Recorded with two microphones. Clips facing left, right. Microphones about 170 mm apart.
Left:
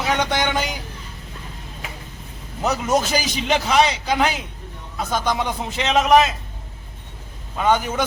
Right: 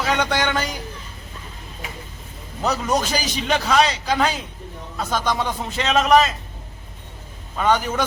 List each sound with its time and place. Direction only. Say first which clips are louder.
0.0 s speech: even; 15° left (ahead or behind)
2.6 s a man's voice: left 1 dB; 15° left (ahead or behind)
7.5 s a man's voice: even; 15° left (ahead or behind)